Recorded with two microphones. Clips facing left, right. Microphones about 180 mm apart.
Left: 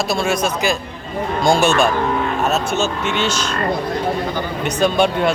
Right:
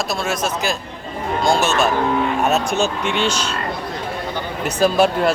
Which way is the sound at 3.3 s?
10° right (ahead or behind).